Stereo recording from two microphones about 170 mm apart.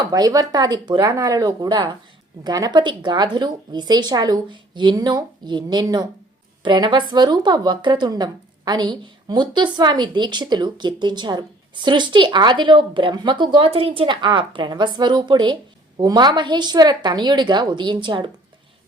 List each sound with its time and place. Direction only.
0.1 s a woman's voice: 20° right (ahead or behind)